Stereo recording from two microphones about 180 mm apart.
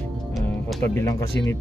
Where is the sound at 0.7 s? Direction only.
10° left (ahead or behind).